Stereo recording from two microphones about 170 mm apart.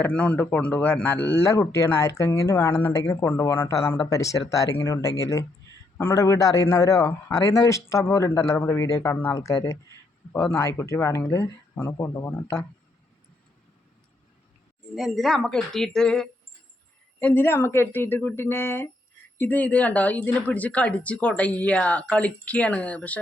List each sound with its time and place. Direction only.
0.0 s speech: 10° left (ahead or behind)
14.9 s a woman's voice: centre (ahead or behind)